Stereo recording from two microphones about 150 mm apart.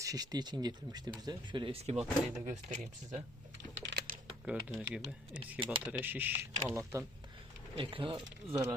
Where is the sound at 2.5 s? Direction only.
50° right (ahead or behind).